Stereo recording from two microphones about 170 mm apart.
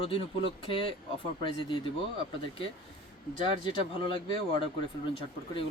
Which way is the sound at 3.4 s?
25° left (ahead or behind).